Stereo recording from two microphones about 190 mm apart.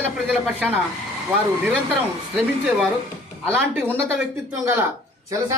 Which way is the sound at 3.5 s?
10° right (ahead or behind).